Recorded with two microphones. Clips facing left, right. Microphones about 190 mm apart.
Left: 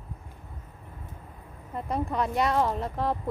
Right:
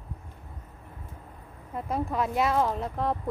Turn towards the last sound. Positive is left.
turn(degrees=0)  # may be behind; listen again after turning